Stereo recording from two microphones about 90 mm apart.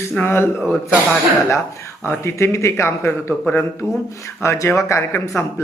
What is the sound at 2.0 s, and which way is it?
A man's voice, 30° left (ahead or behind).